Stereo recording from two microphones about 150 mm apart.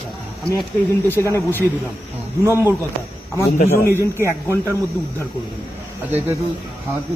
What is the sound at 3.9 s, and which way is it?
Speech, 15° left (ahead or behind).